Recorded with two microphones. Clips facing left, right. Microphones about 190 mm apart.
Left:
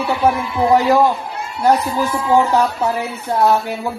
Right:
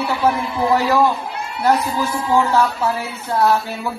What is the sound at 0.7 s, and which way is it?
A woman's voice, 15° left (ahead or behind).